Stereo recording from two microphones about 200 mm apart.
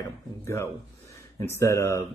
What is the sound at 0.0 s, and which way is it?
Speech, 15° left (ahead or behind).